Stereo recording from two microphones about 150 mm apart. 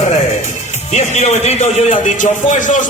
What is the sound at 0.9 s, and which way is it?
A man's voice, 50° left (ahead or behind).